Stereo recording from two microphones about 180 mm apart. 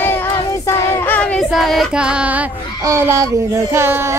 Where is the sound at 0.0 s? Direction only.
10° left (ahead or behind).